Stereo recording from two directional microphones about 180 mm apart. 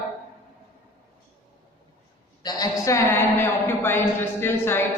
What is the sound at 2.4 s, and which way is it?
A woman's voice, 20° left (ahead or behind).